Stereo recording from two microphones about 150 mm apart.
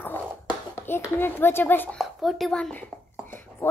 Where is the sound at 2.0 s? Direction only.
Centre (ahead or behind).